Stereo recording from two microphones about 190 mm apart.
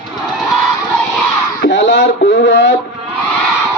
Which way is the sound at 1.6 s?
70° left (ahead or behind).